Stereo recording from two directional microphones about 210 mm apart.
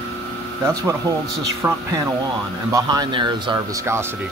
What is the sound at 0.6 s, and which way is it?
A man's voice, 15° right (ahead or behind).